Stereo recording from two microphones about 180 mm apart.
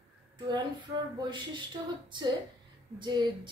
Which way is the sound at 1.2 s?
25° right (ahead or behind).